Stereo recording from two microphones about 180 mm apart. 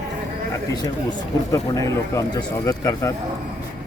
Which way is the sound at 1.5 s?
20° left (ahead or behind).